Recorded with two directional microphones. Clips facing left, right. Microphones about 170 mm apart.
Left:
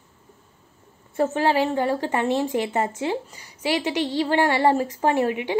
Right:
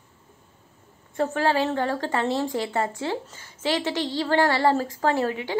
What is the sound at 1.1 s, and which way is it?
A woman's voice, 20° left (ahead or behind).